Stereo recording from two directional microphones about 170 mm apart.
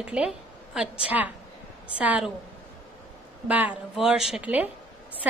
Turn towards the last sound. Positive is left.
turn(degrees=-10)  # may be behind; listen again after turning